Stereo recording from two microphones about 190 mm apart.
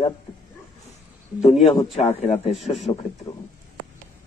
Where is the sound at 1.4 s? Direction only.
35° left (ahead or behind).